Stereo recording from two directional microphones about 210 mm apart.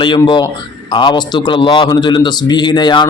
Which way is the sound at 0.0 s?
20° left (ahead or behind).